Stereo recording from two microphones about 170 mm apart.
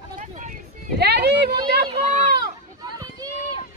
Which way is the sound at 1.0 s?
75° right (ahead or behind).